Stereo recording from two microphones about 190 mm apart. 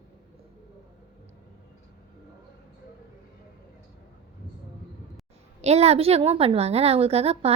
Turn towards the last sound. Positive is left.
turn(degrees=-30)  # may be behind; listen again after turning